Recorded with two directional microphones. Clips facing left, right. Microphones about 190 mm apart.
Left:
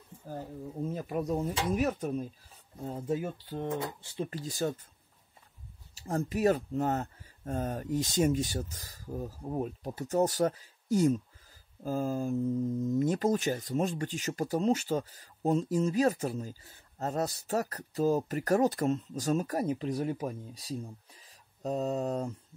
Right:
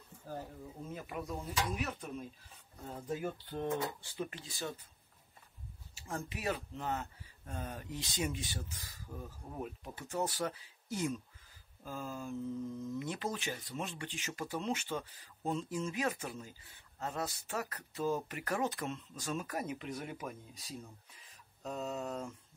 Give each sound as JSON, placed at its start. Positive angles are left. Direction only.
{"t": 0.8, "sound": "speech", "side_deg": 40}
{"t": 3.4, "sound": "speech", "side_deg": 15}
{"t": 4.3, "sound": "speech", "side_deg": 40}
{"t": 5.9, "sound": "speech", "side_deg": 40}